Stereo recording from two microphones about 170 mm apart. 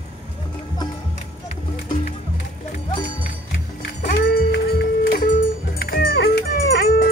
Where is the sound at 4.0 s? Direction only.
75° left (ahead or behind).